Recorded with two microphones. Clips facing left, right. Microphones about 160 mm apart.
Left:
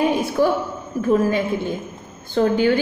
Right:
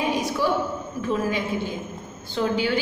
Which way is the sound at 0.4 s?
50° left (ahead or behind).